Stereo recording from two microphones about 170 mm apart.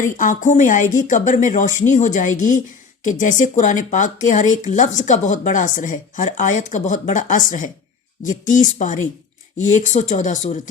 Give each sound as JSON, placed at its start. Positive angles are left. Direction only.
{"t": 0.0, "sound": "speech", "side_deg": 50}